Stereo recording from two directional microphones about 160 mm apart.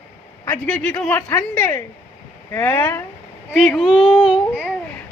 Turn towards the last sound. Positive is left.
turn(degrees=-5)  # may be behind; listen again after turning